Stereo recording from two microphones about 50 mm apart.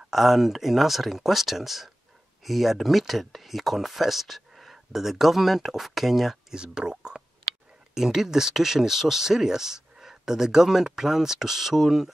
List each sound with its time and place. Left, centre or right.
0.1 s speech: centre
6.5 s a sound: centre
7.9 s speech: centre